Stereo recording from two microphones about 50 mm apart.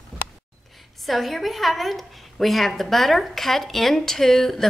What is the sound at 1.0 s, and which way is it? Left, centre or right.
A woman's voice, centre.